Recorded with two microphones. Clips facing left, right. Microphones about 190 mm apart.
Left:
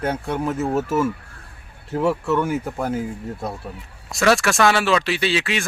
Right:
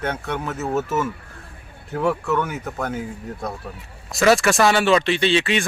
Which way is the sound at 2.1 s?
25° left (ahead or behind).